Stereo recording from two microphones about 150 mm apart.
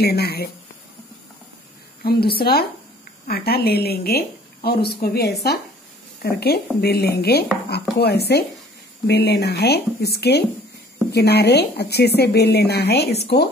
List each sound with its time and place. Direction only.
0.0 s a woman's voice: 90° left
2.0 s a woman's voice: 90° left